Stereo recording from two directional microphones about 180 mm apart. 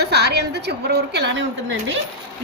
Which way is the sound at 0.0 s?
65° right (ahead or behind).